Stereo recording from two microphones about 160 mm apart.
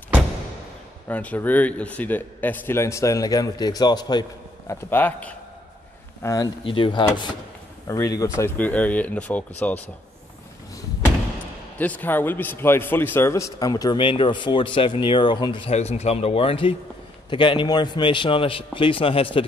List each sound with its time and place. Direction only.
1.0 s a man's voice: 10° left (ahead or behind); by 4.7 s 25° left (ahead or behind)
4.8 s a man's voice: 10° left (ahead or behind)
6.6 s a man's voice: 35° left (ahead or behind); by 9.8 s 10° left (ahead or behind)
11.8 s a man's voice: 10° left (ahead or behind); by 19.4 s 35° left (ahead or behind)